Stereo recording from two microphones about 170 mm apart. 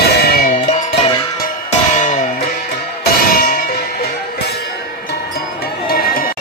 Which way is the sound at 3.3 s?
60° left (ahead or behind).